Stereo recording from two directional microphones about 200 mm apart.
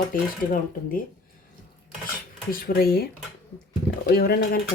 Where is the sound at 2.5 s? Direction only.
45° left (ahead or behind).